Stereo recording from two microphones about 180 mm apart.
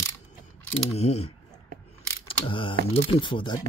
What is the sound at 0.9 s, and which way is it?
Speech, 35° left (ahead or behind).